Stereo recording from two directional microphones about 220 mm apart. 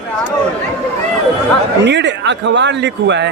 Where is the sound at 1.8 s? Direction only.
55° right (ahead or behind).